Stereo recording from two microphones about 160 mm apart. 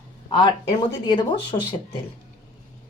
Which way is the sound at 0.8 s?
25° left (ahead or behind).